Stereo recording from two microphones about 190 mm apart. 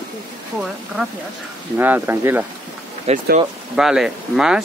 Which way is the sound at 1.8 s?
10° right (ahead or behind).